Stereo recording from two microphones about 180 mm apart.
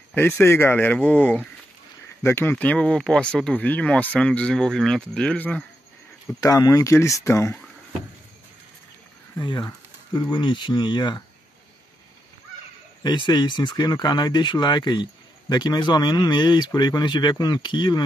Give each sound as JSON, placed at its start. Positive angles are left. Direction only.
{"t": 0.1, "sound": "speech", "side_deg": 10}
{"t": 6.2, "sound": "speech", "side_deg": 20}
{"t": 9.4, "sound": "speech", "side_deg": 25}
{"t": 13.0, "sound": "speech", "side_deg": 25}